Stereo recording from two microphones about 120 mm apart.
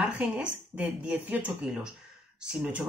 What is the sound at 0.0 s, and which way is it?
Speech, 5° right (ahead or behind).